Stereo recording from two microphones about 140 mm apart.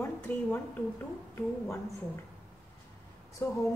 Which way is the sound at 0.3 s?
15° left (ahead or behind).